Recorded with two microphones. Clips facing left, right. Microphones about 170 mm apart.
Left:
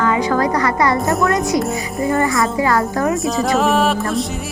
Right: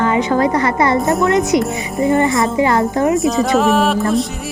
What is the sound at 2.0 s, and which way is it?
A woman's voice, 20° right (ahead or behind).